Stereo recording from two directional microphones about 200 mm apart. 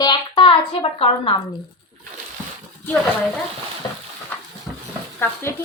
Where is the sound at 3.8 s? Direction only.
20° left (ahead or behind).